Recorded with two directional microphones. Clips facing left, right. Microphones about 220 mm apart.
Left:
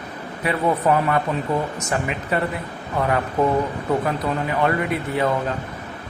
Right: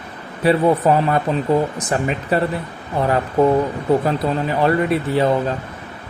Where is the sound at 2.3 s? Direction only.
35° right (ahead or behind).